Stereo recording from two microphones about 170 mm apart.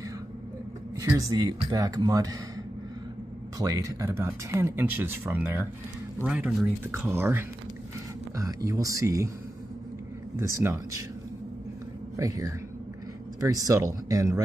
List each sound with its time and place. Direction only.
1.0 s speech: 20° right (ahead or behind)
3.5 s speech: 20° right (ahead or behind)
10.3 s speech: 15° right (ahead or behind)
12.2 s speech: 20° right (ahead or behind)